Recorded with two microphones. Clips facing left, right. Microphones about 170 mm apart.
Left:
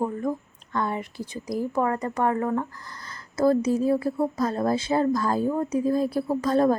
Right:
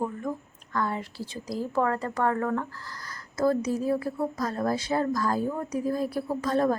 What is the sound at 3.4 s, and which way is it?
Speech, 30° left (ahead or behind).